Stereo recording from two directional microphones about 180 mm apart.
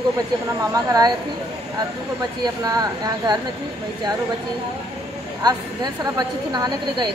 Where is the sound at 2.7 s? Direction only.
20° right (ahead or behind).